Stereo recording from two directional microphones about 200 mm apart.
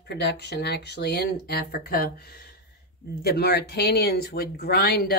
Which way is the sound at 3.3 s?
50° left (ahead or behind).